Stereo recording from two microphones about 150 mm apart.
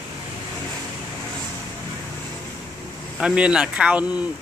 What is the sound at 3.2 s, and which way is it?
Speech, 5° right (ahead or behind).